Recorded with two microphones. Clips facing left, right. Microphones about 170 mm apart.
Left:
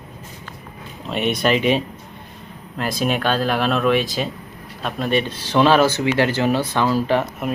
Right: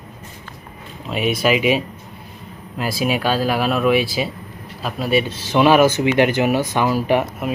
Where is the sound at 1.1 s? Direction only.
5° right (ahead or behind).